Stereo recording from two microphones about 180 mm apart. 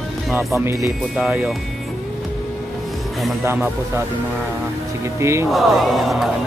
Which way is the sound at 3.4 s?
10° right (ahead or behind).